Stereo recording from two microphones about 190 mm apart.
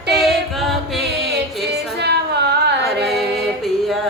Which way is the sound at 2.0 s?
60° right (ahead or behind).